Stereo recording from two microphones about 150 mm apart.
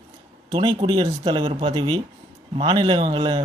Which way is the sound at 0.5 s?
35° right (ahead or behind).